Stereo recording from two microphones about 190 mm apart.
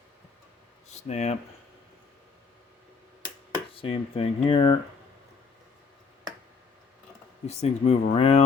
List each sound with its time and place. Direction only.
1.0 s speech: 35° left (ahead or behind)
3.8 s speech: 30° left (ahead or behind)
7.4 s speech: 35° left (ahead or behind)